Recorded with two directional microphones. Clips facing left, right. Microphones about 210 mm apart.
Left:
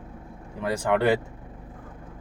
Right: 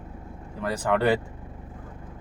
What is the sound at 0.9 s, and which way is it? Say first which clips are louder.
Speech: left 1 dB; 5° left (ahead or behind).